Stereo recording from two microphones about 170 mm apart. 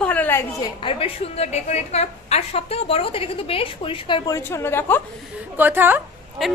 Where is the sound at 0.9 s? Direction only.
35° left (ahead or behind).